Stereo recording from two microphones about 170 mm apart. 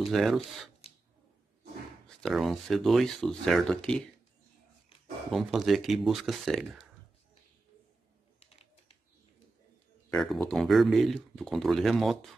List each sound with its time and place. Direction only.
0.1 s speech: centre (ahead or behind)
0.8 s a sound: 35° left (ahead or behind)
2.0 s speech: centre (ahead or behind)
5.3 s speech: centre (ahead or behind)
8.4 s typing: 35° left (ahead or behind)
10.0 s speech: 10° left (ahead or behind)